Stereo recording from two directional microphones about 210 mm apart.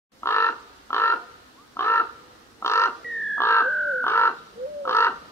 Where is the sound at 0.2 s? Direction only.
10° left (ahead or behind).